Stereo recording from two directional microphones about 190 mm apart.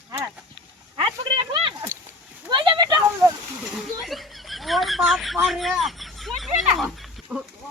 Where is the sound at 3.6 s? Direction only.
Centre (ahead or behind).